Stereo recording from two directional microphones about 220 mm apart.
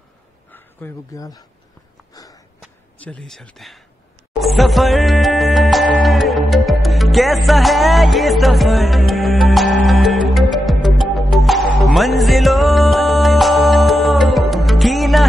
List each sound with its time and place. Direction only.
0.5 s speech: 10° left (ahead or behind)
2.1 s a sound: 15° left (ahead or behind)
2.6 s speech: 5° left (ahead or behind)
4.3 s music: centre (ahead or behind)